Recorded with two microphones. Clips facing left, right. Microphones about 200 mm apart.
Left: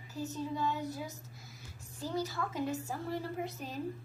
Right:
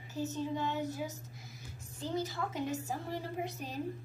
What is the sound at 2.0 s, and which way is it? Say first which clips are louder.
A woman's voice: even; 20° right (ahead or behind).